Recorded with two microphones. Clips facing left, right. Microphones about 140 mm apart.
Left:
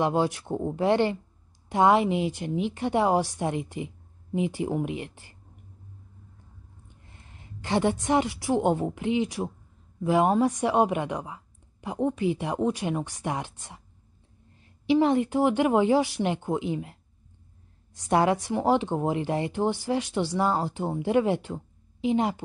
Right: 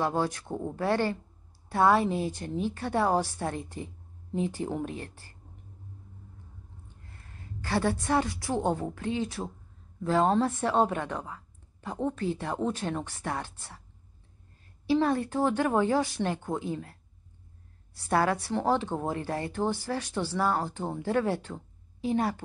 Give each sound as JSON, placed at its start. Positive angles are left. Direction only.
{"t": 0.0, "sound": "a woman's voice", "side_deg": 15}
{"t": 6.9, "sound": "a woman's voice", "side_deg": 20}
{"t": 14.9, "sound": "a woman's voice", "side_deg": 15}